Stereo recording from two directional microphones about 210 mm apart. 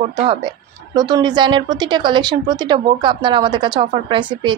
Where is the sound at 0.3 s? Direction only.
20° right (ahead or behind).